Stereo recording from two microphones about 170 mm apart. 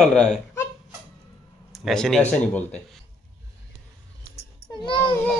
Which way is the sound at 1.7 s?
Centre (ahead or behind).